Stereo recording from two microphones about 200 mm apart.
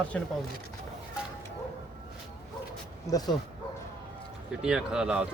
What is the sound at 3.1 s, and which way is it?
Speech, 20° left (ahead or behind).